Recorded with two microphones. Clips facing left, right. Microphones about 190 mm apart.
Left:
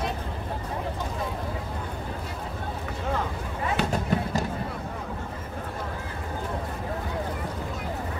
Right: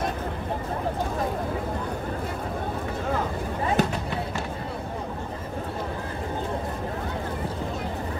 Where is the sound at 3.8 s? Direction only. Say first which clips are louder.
Right 4 dB; 45° right (ahead or behind).